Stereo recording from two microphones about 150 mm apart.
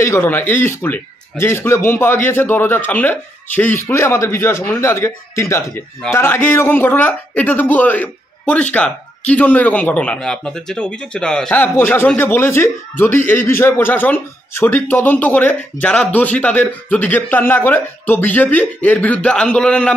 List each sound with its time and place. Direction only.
0.0 s speech: 15° left (ahead or behind)